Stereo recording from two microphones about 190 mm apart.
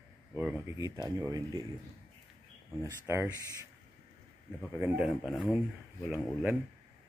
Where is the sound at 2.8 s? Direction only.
15° right (ahead or behind).